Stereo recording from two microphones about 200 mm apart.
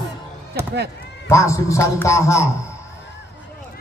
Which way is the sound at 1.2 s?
15° left (ahead or behind).